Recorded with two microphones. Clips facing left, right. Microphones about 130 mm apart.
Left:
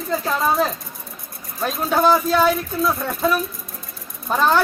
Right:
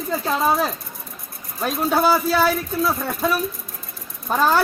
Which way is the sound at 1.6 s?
5° right (ahead or behind).